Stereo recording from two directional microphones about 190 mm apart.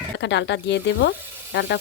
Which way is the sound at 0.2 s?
65° left (ahead or behind).